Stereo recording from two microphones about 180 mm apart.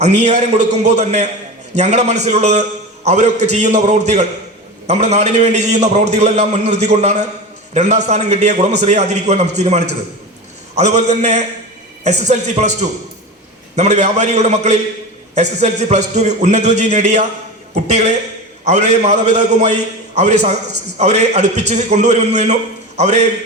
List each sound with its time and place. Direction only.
0.0 s a man's voice: 40° right (ahead or behind)